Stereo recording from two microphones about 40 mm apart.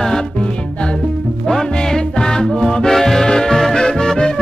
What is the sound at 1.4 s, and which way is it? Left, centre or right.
Music, centre.